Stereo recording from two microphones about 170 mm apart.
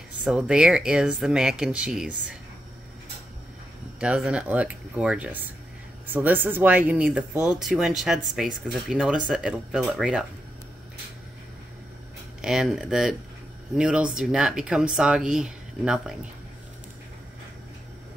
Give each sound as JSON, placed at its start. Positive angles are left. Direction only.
{"t": 0.2, "sound": "speech", "side_deg": -5}
{"t": 4.0, "sound": "speech", "side_deg": -5}
{"t": 12.4, "sound": "speech", "side_deg": -5}